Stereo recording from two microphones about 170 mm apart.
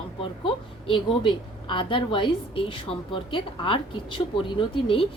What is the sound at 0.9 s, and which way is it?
A woman's voice, 30° left (ahead or behind).